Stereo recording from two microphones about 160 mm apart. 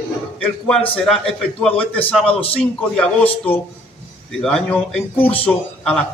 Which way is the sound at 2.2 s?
35° left (ahead or behind).